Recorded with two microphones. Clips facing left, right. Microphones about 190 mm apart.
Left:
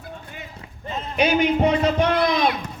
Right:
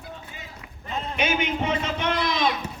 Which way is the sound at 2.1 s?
60° left (ahead or behind).